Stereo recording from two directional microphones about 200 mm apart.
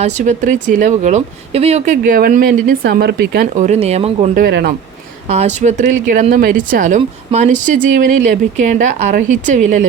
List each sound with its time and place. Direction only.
0.0 s speech: 40° right (ahead or behind)
4.4 s speech: 50° right (ahead or behind)
5.3 s speech: 35° right (ahead or behind)